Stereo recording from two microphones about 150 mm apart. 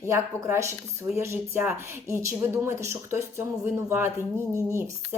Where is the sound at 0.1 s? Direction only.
20° right (ahead or behind).